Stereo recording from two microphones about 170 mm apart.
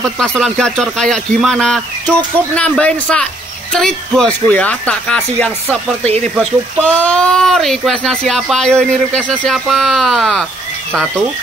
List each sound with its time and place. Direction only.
0.0 s speech: 5° left (ahead or behind)
6.0 s speech: 40° right (ahead or behind)
6.8 s speech: 5° left (ahead or behind)